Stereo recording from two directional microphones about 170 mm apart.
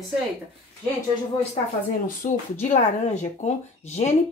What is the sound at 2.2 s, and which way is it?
Speech, 50° left (ahead or behind).